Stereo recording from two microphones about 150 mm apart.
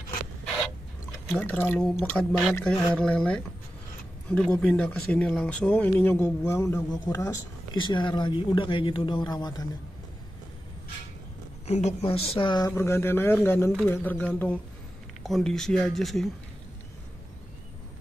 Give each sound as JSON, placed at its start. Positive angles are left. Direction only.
{"t": 1.3, "sound": "speech", "side_deg": 10}
{"t": 1.8, "sound": "speech", "side_deg": 0}
{"t": 11.6, "sound": "speech", "side_deg": 45}